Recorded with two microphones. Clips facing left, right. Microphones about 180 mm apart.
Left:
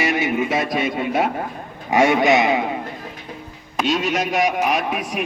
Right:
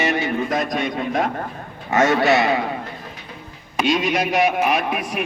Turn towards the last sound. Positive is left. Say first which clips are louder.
# even
turn(degrees=-5)  # may be behind; listen again after turning